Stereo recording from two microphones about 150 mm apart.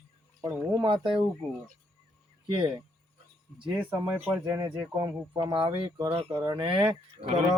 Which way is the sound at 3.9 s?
10° right (ahead or behind).